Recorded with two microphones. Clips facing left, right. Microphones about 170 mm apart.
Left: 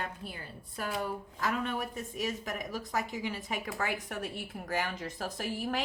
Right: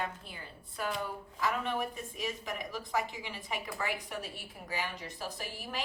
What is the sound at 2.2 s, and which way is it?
Speech, 45° left (ahead or behind).